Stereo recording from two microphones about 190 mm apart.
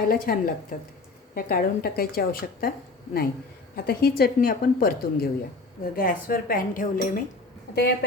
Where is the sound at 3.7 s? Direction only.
55° left (ahead or behind).